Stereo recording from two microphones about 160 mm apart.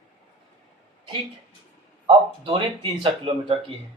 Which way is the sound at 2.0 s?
30° right (ahead or behind).